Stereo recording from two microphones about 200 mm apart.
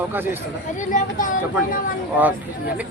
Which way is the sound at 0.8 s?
40° left (ahead or behind).